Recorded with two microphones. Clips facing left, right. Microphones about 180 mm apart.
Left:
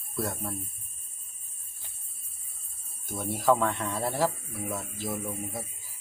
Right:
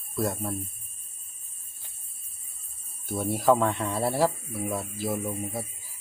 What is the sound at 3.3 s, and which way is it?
Speech, 10° right (ahead or behind).